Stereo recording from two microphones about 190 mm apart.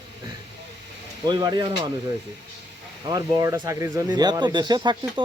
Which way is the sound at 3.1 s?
20° right (ahead or behind).